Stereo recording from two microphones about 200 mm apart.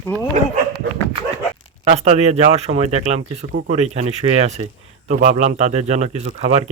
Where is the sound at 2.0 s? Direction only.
35° right (ahead or behind).